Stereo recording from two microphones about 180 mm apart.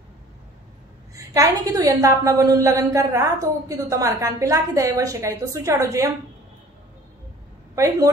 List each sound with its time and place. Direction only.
1.1 s a woman's voice: 20° right (ahead or behind)
7.7 s a woman's voice: 15° right (ahead or behind)